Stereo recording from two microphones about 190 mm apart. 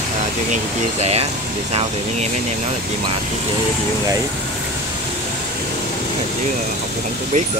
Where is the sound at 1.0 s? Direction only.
30° right (ahead or behind).